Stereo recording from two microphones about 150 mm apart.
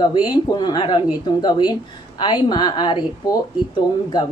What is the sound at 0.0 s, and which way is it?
A woman's voice, 30° left (ahead or behind).